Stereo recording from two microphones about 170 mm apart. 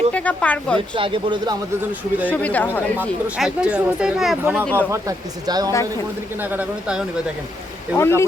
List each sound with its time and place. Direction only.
0.1 s speech: 10° left (ahead or behind)
0.9 s speech: 30° right (ahead or behind)
2.2 s speech: 10° left (ahead or behind)
3.0 s speech: 5° right (ahead or behind)
4.6 s speech: 10° left (ahead or behind)
4.9 s speech: 20° right (ahead or behind)
6.4 s speech: 10° right (ahead or behind)
7.9 s speech: 15° left (ahead or behind)